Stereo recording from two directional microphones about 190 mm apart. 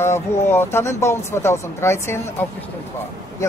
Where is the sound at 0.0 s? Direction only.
15° left (ahead or behind).